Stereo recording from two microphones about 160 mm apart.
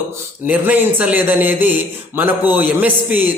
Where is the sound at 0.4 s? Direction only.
10° right (ahead or behind).